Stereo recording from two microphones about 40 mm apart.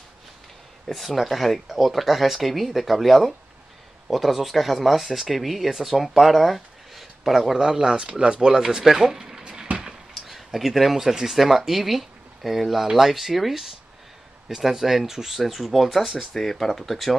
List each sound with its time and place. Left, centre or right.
0.8 s speech: centre
7.5 s speech: centre
9.4 s a sound: centre
10.1 s speech: centre